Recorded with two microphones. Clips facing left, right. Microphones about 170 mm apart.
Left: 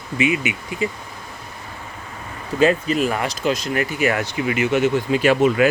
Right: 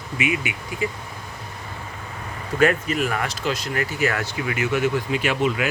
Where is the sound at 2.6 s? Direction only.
25° left (ahead or behind).